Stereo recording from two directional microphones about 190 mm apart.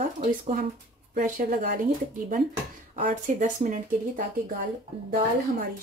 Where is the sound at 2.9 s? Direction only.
40° right (ahead or behind).